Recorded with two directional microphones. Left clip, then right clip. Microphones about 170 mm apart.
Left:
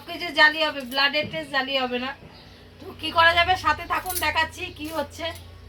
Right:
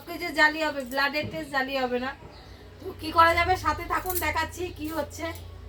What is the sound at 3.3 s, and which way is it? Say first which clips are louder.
A woman's voice: left 4 dB; 20° right (ahead or behind).